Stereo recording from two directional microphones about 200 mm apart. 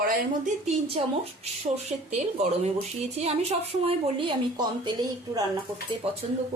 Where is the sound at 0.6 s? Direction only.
35° right (ahead or behind).